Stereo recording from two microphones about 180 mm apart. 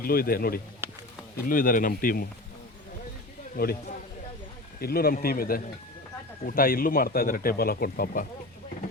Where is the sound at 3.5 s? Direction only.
55° left (ahead or behind).